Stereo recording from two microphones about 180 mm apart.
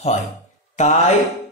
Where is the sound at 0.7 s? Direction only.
40° left (ahead or behind).